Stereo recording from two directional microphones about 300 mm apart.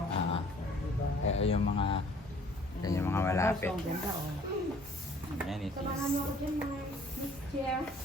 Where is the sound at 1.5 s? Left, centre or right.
Centre.